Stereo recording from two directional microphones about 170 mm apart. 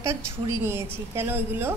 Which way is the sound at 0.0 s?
15° right (ahead or behind).